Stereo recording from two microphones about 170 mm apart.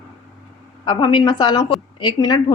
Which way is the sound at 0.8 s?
30° left (ahead or behind).